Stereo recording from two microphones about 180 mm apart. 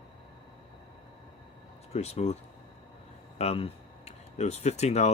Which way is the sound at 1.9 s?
35° left (ahead or behind).